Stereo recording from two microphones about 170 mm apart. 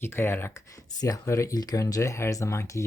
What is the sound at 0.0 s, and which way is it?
Speech, 15° left (ahead or behind).